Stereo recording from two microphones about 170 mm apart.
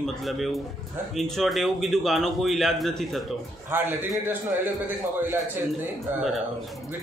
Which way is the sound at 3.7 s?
15° right (ahead or behind).